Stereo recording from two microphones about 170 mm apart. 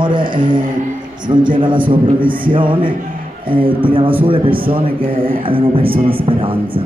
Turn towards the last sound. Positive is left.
turn(degrees=-30)  # may be behind; listen again after turning